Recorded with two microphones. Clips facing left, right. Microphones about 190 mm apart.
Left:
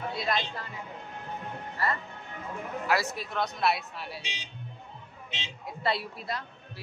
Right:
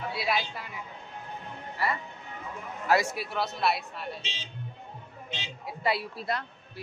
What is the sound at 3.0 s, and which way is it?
Speech, 10° right (ahead or behind).